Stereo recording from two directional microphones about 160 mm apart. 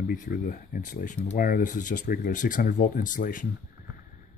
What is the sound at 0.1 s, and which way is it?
Speech, 55° left (ahead or behind).